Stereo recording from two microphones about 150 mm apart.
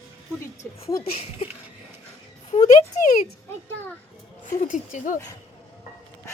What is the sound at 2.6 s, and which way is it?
Speech, 50° left (ahead or behind).